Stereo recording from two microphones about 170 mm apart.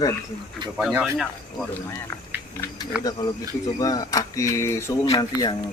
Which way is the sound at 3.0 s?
20° left (ahead or behind).